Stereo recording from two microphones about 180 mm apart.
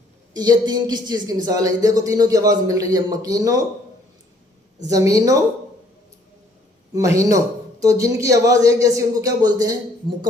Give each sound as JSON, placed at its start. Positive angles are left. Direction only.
{"t": 0.3, "sound": "a man's voice", "side_deg": -25}
{"t": 4.9, "sound": "a man's voice", "side_deg": -20}
{"t": 6.9, "sound": "a man's voice", "side_deg": -15}